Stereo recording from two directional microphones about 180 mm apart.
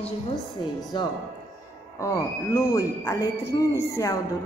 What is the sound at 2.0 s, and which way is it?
A woman's voice, 15° left (ahead or behind).